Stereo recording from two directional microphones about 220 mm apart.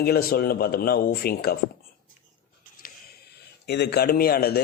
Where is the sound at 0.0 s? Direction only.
45° left (ahead or behind).